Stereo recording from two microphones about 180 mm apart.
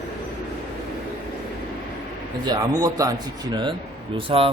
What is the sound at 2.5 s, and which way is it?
Speech, 20° right (ahead or behind).